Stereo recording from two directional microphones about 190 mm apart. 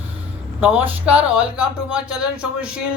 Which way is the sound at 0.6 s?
10° right (ahead or behind).